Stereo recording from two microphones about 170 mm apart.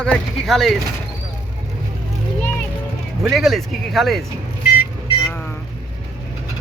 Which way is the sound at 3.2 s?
Centre (ahead or behind).